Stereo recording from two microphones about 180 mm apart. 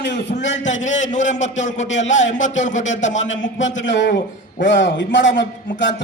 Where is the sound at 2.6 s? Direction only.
40° left (ahead or behind).